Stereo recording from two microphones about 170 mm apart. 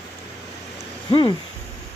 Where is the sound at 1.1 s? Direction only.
30° left (ahead or behind).